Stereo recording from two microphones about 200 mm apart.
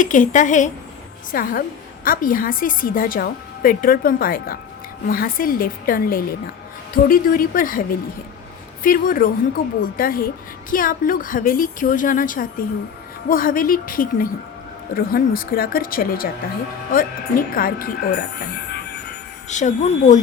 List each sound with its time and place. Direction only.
0.0 s a woman's voice: 40° left (ahead or behind)
17.5 s a woman's voice: 45° left (ahead or behind)
19.5 s a woman's voice: 35° left (ahead or behind)